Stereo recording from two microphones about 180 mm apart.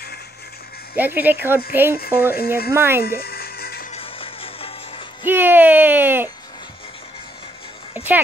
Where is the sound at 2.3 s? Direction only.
55° left (ahead or behind).